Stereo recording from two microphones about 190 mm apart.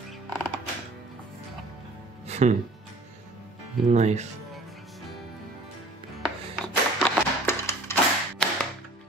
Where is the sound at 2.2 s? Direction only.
35° right (ahead or behind).